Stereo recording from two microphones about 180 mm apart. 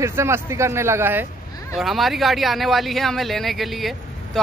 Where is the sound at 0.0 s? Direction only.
15° right (ahead or behind).